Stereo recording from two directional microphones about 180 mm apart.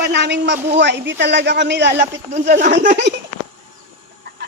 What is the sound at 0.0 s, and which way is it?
Speech, 70° right (ahead or behind).